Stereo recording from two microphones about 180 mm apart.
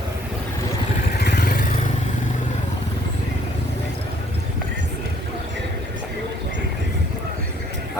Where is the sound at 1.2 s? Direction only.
60° left (ahead or behind).